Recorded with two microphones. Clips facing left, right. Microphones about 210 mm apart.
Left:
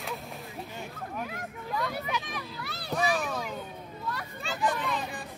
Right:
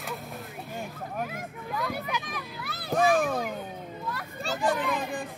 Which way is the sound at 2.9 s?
50° right (ahead or behind).